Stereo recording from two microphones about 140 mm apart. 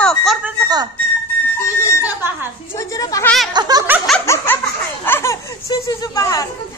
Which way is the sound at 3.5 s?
30° right (ahead or behind).